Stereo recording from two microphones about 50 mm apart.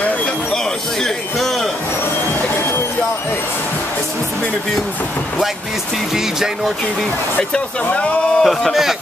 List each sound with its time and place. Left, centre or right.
1.0 s a sound: centre
7.5 s speech: left
8.4 s a man's voice: centre